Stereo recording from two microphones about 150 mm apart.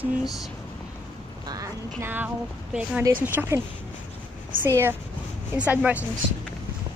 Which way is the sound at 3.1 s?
15° right (ahead or behind).